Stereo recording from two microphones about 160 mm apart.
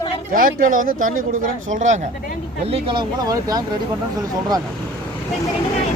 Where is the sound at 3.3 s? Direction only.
25° right (ahead or behind).